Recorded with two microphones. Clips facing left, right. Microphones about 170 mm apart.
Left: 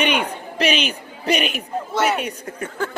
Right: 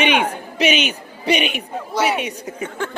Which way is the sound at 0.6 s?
35° left (ahead or behind).